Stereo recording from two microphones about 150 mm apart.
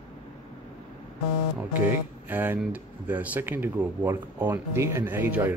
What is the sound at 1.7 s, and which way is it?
Speech, 10° right (ahead or behind).